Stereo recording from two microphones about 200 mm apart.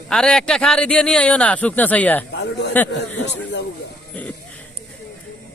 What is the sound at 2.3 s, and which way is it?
Speech, 55° left (ahead or behind).